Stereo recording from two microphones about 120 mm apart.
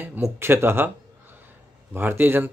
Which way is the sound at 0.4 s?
20° right (ahead or behind).